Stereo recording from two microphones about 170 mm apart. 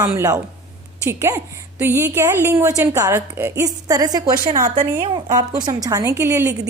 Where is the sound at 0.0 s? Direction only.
15° right (ahead or behind).